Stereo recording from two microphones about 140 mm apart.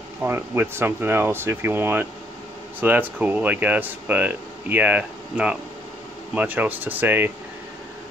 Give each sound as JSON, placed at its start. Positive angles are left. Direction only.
{"t": 0.2, "sound": "speech", "side_deg": -15}